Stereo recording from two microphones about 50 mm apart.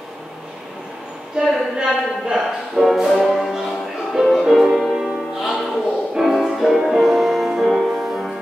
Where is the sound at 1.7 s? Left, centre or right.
Centre.